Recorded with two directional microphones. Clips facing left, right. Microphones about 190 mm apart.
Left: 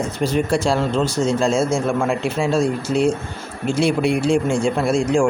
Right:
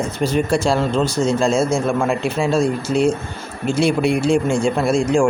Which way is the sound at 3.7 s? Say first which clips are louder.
Right 1 dB; 35° right (ahead or behind).